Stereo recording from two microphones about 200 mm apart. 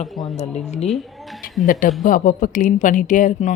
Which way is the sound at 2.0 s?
40° left (ahead or behind).